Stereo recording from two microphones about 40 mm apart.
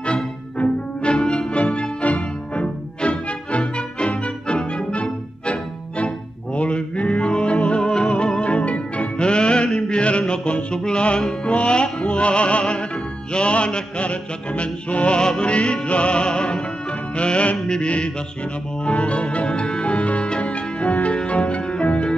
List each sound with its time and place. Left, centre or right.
0.0 s music: left